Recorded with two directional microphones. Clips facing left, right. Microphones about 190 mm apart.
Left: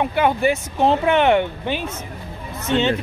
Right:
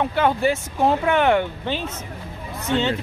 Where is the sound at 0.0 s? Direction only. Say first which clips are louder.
Left 1 dB; 15° left (ahead or behind).